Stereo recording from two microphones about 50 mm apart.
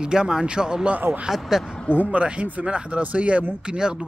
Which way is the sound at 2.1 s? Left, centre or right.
Right.